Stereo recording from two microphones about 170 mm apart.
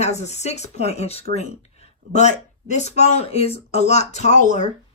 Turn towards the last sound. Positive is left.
turn(degrees=45)  # may be behind; listen again after turning